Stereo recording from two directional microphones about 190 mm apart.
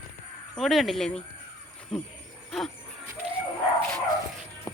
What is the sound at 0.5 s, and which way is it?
Speech, centre (ahead or behind).